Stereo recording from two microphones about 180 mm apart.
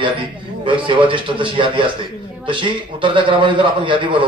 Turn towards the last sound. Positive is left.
turn(degrees=-25)  # may be behind; listen again after turning